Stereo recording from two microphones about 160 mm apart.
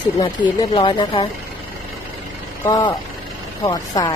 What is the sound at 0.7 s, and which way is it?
Speech, 30° left (ahead or behind).